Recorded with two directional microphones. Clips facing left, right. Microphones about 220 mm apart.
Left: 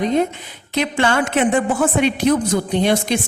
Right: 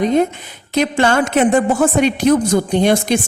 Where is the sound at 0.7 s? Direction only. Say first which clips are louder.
Right 4 dB; 40° right (ahead or behind).